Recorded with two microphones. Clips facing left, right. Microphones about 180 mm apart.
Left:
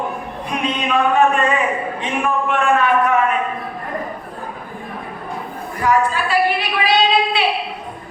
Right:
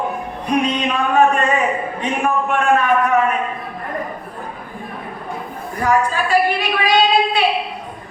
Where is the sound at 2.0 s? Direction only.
45° right (ahead or behind).